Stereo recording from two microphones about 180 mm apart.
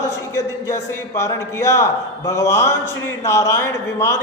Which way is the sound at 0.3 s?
15° left (ahead or behind).